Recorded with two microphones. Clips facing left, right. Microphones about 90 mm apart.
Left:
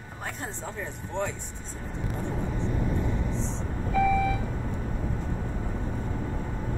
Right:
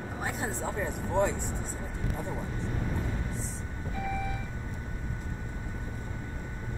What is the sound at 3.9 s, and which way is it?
Vehicle, 90° left.